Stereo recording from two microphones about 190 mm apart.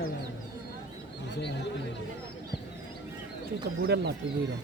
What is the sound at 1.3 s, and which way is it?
Speech, 65° left (ahead or behind).